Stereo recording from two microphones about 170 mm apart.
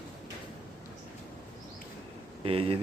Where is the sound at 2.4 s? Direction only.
35° right (ahead or behind).